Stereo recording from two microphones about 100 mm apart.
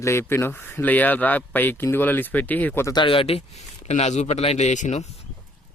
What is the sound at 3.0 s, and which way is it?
Speech, 70° left (ahead or behind).